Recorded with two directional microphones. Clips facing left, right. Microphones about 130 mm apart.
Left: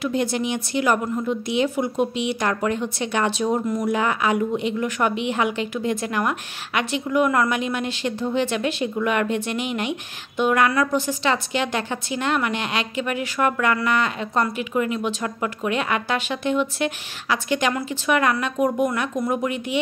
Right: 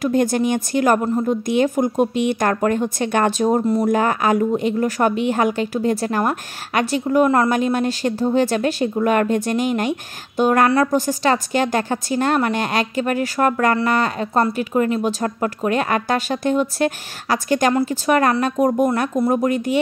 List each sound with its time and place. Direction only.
0.0 s a woman's voice: 45° right (ahead or behind)